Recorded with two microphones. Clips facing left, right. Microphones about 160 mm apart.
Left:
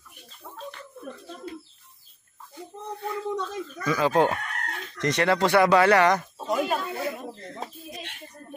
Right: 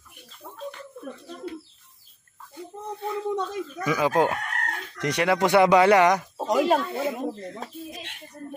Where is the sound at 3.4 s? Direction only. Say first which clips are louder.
Right 3 dB; 15° right (ahead or behind).